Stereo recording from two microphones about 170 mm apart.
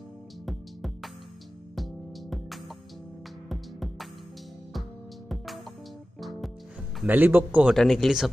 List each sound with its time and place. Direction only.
0.5 s music: centre (ahead or behind)
5.3 s music: centre (ahead or behind)
7.0 s a man's voice: 10° right (ahead or behind)
7.7 s speech: centre (ahead or behind)